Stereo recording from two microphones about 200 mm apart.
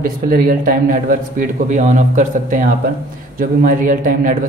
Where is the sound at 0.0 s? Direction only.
45° right (ahead or behind).